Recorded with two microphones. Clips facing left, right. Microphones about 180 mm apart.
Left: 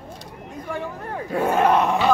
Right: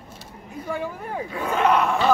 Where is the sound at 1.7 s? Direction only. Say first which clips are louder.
Left 2 dB; 20° left (ahead or behind).